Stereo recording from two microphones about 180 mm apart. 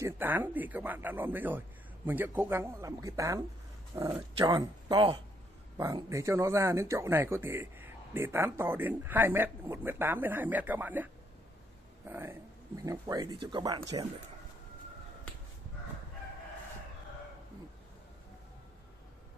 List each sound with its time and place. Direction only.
0.0 s speech: 10° right (ahead or behind)
12.1 s speech: 15° right (ahead or behind)